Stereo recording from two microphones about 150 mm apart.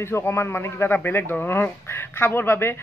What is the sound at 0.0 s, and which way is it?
Speech, 15° left (ahead or behind).